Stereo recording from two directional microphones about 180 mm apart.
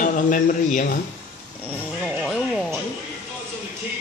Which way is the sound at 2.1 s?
Centre (ahead or behind).